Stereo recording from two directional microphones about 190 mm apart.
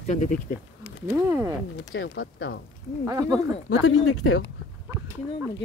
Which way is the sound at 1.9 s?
70° left (ahead or behind).